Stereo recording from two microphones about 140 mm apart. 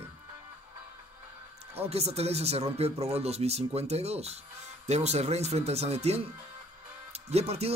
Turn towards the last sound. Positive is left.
turn(degrees=-45)  # may be behind; listen again after turning